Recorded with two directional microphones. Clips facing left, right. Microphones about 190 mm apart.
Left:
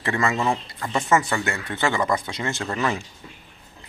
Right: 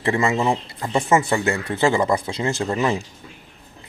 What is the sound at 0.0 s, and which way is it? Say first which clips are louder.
Speech: right 3 dB; 25° right (ahead or behind).